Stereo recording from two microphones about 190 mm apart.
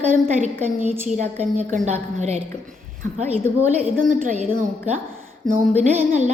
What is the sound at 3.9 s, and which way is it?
Speech, 45° right (ahead or behind).